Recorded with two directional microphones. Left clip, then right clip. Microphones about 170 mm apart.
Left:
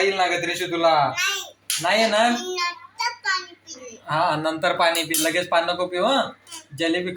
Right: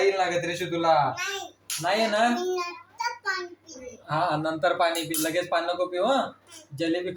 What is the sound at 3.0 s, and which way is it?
Child singing, 70° right (ahead or behind).